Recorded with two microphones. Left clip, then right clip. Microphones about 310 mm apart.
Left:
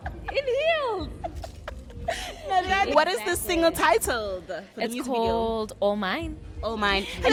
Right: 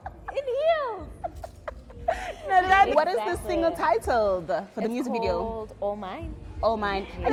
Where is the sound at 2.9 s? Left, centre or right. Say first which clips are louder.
Left 1 dB; centre.